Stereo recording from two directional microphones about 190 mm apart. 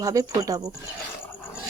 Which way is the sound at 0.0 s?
20° right (ahead or behind).